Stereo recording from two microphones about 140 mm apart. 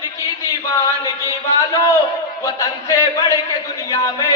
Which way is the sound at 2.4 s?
25° left (ahead or behind).